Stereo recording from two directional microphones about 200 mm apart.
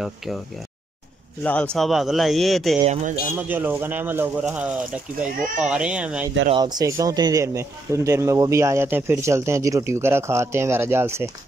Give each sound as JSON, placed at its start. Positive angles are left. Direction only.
{"t": 1.4, "sound": "a man's voice", "side_deg": 5}
{"t": 2.8, "sound": "speech", "side_deg": -35}
{"t": 3.3, "sound": "a man's voice", "side_deg": -10}
{"t": 6.5, "sound": "speech", "side_deg": -20}